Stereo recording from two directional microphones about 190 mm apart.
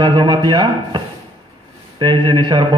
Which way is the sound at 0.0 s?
25° right (ahead or behind).